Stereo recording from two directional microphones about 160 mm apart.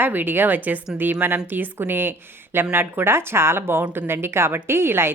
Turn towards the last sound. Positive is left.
turn(degrees=-15)  # may be behind; listen again after turning